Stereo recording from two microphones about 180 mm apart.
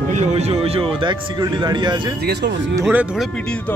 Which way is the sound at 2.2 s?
65° right (ahead or behind).